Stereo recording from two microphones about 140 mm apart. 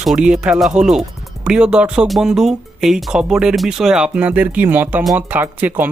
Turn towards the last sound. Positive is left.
turn(degrees=-10)  # may be behind; listen again after turning